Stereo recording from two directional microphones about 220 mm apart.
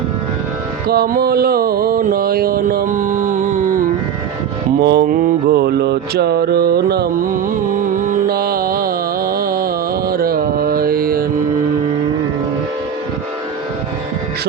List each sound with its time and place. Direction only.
0.9 s mantra: 40° right (ahead or behind)
4.8 s mantra: 45° right (ahead or behind)
7.9 s music: 40° right (ahead or behind)